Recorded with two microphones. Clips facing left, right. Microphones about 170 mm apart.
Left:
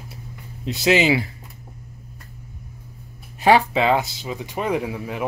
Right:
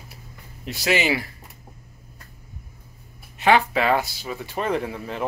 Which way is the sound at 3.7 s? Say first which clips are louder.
Left 2 dB; 20° left (ahead or behind).